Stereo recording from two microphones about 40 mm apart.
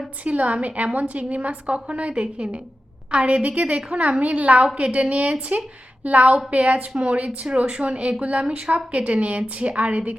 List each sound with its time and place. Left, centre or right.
0.3 s a woman's voice: right